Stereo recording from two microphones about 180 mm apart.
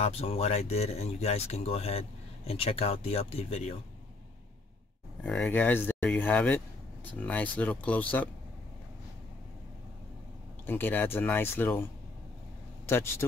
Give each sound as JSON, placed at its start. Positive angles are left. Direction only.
{"t": 0.0, "sound": "speech", "side_deg": 35}
{"t": 5.2, "sound": "speech", "side_deg": 5}
{"t": 10.7, "sound": "speech", "side_deg": 10}
{"t": 12.8, "sound": "speech", "side_deg": 15}